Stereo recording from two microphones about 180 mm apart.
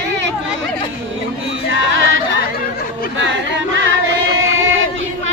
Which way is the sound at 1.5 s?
90° right.